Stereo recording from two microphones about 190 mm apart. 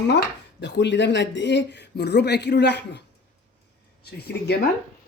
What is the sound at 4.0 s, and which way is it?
Speech, 60° left (ahead or behind).